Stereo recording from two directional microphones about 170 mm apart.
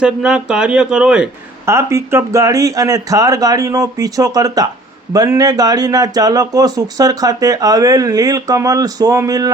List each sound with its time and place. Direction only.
0.0 s speech: 5° right (ahead or behind)
1.6 s speech: 15° right (ahead or behind)